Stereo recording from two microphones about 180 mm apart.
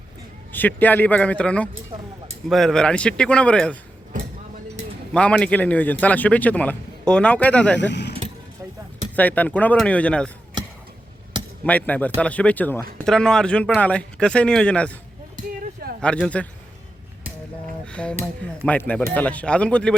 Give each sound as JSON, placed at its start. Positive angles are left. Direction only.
{"t": 0.5, "sound": "a man's voice", "side_deg": 10}
{"t": 4.1, "sound": "a sound", "side_deg": -45}
{"t": 5.1, "sound": "speech", "side_deg": 5}
{"t": 7.8, "sound": "speech", "side_deg": 75}
{"t": 9.1, "sound": "speech", "side_deg": 10}
{"t": 11.6, "sound": "speech", "side_deg": 10}
{"t": 15.6, "sound": "a sound", "side_deg": -55}
{"t": 16.0, "sound": "a man's voice", "side_deg": 5}
{"t": 17.8, "sound": "speech", "side_deg": 5}